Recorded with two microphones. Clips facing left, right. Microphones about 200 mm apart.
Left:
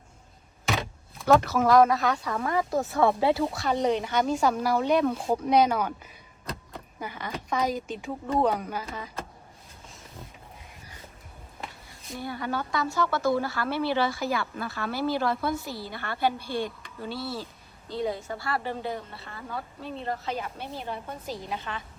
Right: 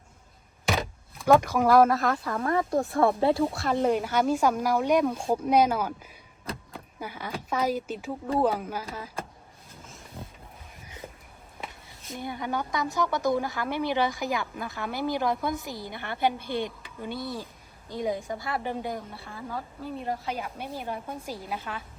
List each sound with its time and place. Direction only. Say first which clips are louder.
1.3 s speech: even; 15° right (ahead or behind)
12.1 s speech: even; 20° right (ahead or behind)